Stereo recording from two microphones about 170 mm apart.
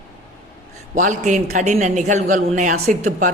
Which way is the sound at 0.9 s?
45° right (ahead or behind).